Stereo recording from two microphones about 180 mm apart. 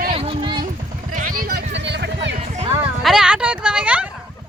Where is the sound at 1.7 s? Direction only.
75° right (ahead or behind).